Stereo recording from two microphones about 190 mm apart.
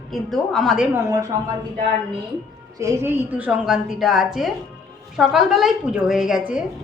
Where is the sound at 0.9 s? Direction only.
15° right (ahead or behind).